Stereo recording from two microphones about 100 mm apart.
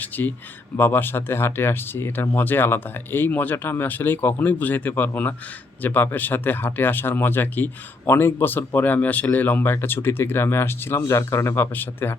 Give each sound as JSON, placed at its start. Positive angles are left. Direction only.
{"t": 0.0, "sound": "speech", "side_deg": 15}